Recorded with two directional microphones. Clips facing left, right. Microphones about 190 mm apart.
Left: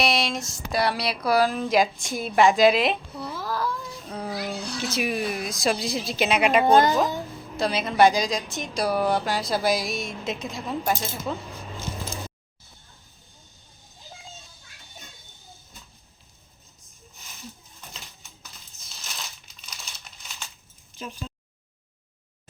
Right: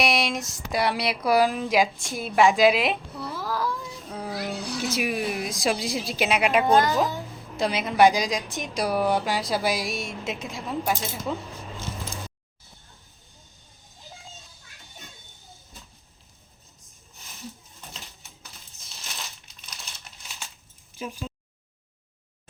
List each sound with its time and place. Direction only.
0.0 s a woman's voice: 15° right (ahead or behind)
6.7 s a woman's voice: 25° left (ahead or behind)
7.5 s a woman's voice: 15° right (ahead or behind)
21.0 s speech: 10° right (ahead or behind)